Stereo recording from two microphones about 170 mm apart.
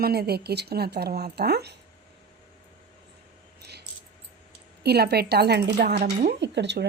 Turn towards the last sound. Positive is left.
turn(degrees=-90)